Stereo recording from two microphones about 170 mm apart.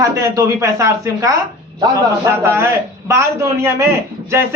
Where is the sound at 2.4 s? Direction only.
15° right (ahead or behind).